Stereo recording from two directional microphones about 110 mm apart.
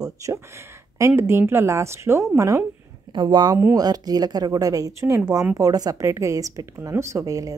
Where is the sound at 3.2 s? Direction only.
40° right (ahead or behind).